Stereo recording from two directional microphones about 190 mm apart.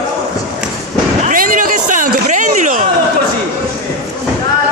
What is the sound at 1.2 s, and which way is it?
A man's voice, 45° right (ahead or behind).